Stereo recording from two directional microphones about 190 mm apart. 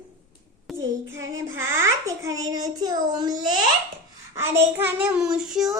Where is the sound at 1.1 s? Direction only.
15° right (ahead or behind).